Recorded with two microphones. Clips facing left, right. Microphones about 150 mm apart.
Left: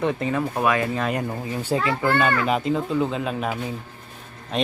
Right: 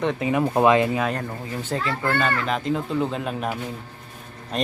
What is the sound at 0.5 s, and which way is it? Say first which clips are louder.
Speech: right 7 dB; 25° right (ahead or behind).